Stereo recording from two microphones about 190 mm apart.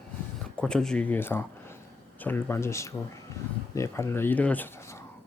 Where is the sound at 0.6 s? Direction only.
5° left (ahead or behind).